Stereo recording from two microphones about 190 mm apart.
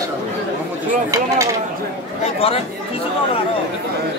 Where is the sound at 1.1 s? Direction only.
15° right (ahead or behind).